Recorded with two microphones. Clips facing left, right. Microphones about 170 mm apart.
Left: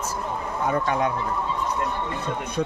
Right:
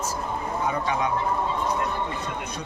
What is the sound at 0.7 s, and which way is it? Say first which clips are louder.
Speech: left 5 dB; 50° left (ahead or behind).